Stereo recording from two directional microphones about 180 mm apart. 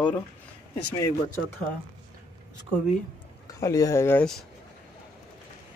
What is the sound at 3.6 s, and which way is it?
Speech, 20° left (ahead or behind).